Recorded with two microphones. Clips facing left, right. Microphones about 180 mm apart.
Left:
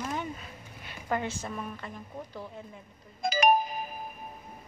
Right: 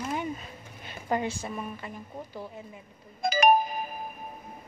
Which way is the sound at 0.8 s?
15° right (ahead or behind).